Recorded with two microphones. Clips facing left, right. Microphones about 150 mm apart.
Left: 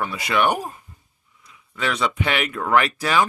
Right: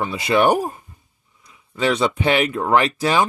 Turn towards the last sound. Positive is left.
turn(degrees=-30)  # may be behind; listen again after turning